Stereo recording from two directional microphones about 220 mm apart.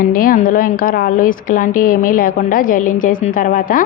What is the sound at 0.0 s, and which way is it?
A woman's voice, 40° left (ahead or behind).